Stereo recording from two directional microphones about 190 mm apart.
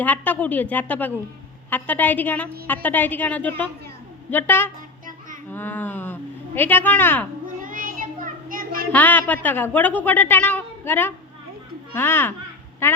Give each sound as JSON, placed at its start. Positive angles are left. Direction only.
{"t": 0.0, "sound": "a woman's voice", "side_deg": 10}
{"t": 7.4, "sound": "child singing", "side_deg": -45}
{"t": 8.9, "sound": "a woman's voice", "side_deg": 10}